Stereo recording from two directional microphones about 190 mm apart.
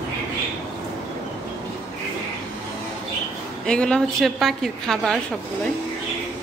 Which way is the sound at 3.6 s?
5° left (ahead or behind).